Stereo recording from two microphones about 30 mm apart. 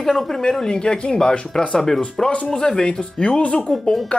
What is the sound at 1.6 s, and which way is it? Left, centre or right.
Speech, centre.